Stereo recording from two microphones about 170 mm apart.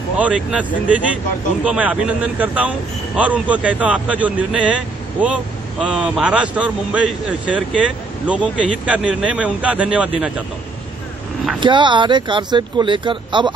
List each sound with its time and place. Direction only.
0.2 s a man's voice: 5° right (ahead or behind)
11.6 s speech: 30° right (ahead or behind)